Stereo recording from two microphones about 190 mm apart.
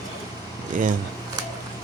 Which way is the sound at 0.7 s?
45° right (ahead or behind).